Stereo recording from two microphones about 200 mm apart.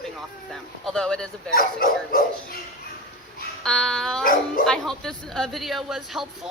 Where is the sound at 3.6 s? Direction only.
5° left (ahead or behind).